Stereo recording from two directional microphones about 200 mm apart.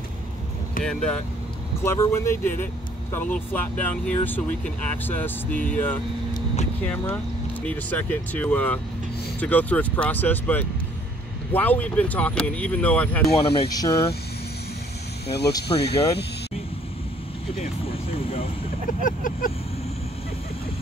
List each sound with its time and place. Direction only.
0.8 s speech: 5° left (ahead or behind)
7.6 s speech: 10° left (ahead or behind)
13.5 s speech: 25° left (ahead or behind)
15.2 s speech: 55° left (ahead or behind)
17.6 s vehicle: 30° left (ahead or behind)
18.9 s vehicle: 40° left (ahead or behind)